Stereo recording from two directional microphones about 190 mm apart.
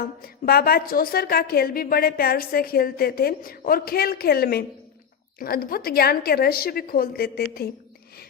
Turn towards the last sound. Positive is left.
turn(degrees=55)  # may be behind; listen again after turning